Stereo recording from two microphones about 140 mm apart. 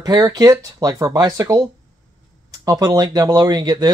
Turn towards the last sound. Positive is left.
turn(degrees=-30)  # may be behind; listen again after turning